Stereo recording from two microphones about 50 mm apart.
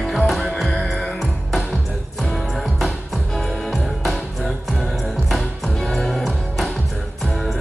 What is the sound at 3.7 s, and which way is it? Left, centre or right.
Music, centre.